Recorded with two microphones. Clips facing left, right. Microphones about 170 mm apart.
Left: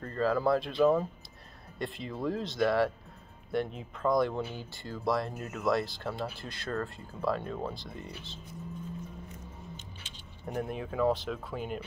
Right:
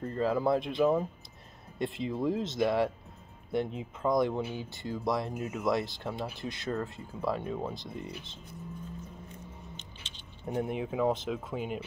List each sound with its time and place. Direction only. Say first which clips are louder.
0.0 s speech: even; 20° right (ahead or behind)
9.8 s keys jangling: left 1 dB; 20° right (ahead or behind)
10.4 s speech: right 3 dB; 15° right (ahead or behind)